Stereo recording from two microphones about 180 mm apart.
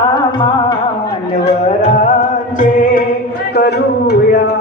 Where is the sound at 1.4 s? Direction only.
40° left (ahead or behind).